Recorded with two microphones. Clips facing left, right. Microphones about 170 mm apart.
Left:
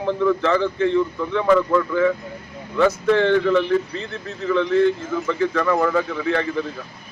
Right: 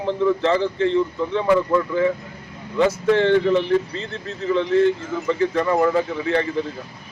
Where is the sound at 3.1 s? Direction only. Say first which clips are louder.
Even; 20° right (ahead or behind).